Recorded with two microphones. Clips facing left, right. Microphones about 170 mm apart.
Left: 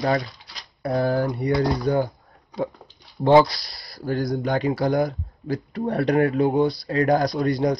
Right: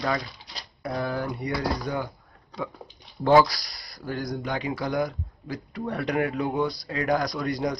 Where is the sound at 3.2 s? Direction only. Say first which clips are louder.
Left 3 dB; 25° left (ahead or behind).